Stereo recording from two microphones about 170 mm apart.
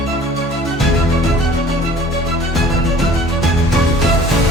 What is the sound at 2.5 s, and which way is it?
Music, centre (ahead or behind).